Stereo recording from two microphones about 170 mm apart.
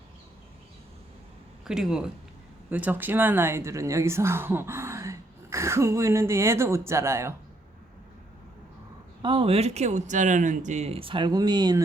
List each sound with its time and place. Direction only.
1.6 s a woman's voice: 5° right (ahead or behind)
9.2 s speech: 30° right (ahead or behind)